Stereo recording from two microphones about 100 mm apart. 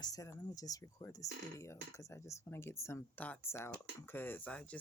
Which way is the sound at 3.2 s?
15° left (ahead or behind).